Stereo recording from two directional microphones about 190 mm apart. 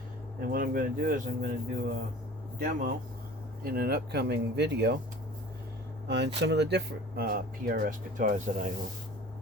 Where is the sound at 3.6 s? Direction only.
55° right (ahead or behind).